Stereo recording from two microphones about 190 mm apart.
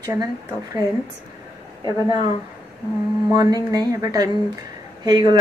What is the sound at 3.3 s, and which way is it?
Speech, 20° right (ahead or behind).